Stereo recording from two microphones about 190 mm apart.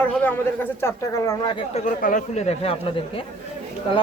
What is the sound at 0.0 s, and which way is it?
Speech, 10° left (ahead or behind).